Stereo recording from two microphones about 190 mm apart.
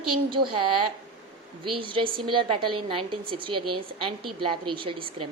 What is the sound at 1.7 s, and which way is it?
A woman's voice, 25° right (ahead or behind).